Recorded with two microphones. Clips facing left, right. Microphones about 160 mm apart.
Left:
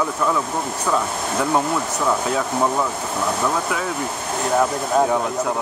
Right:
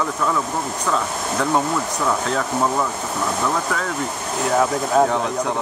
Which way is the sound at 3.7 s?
10° left (ahead or behind).